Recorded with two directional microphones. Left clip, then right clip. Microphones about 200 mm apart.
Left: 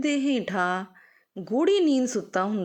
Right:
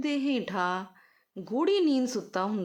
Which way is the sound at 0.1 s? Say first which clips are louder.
Left 4 dB; 10° left (ahead or behind).